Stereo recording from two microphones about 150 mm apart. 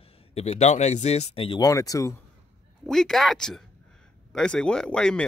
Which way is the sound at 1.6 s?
25° left (ahead or behind).